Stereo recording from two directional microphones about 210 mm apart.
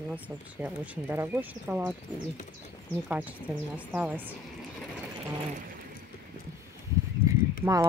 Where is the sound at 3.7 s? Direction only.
5° right (ahead or behind).